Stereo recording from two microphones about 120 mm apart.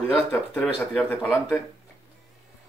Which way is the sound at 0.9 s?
5° right (ahead or behind).